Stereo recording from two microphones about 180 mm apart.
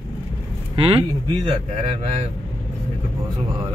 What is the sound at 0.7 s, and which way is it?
Speech, 30° right (ahead or behind).